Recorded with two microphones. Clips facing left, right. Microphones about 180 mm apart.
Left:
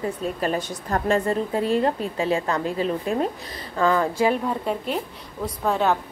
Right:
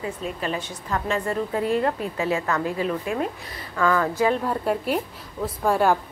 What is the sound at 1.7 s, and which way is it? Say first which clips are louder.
A woman's voice: left 1 dB; 25° left (ahead or behind).